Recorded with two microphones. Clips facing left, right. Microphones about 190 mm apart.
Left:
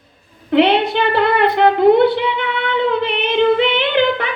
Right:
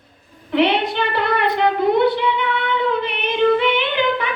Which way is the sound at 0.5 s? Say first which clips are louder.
Left 4 dB; 60° left (ahead or behind).